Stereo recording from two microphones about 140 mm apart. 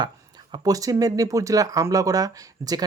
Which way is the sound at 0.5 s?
25° right (ahead or behind).